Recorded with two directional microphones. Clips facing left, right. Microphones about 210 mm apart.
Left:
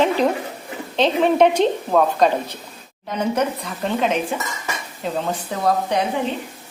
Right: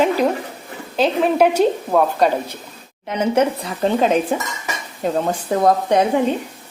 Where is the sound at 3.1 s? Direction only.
25° right (ahead or behind).